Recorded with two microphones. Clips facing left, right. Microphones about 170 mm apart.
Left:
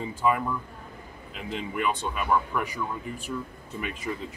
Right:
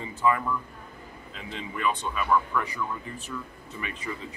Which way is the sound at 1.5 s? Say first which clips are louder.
Left 1 dB; 10° left (ahead or behind).